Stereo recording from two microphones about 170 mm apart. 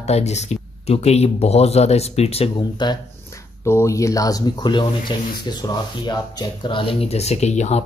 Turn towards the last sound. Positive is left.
turn(degrees=40)  # may be behind; listen again after turning